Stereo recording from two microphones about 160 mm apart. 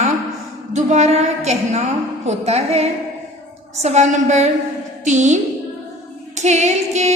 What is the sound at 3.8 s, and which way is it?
Female singing, 45° right (ahead or behind).